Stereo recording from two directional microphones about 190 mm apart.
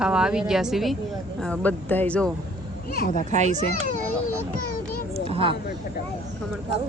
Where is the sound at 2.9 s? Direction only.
50° left (ahead or behind).